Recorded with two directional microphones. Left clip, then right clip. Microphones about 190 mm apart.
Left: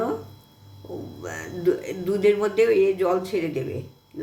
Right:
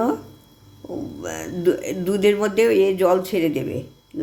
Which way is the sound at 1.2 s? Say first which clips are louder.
Right 3 dB; 45° right (ahead or behind).